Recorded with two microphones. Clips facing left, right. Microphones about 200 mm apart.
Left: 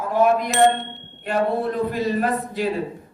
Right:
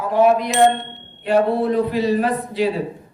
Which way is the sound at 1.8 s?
45° left (ahead or behind).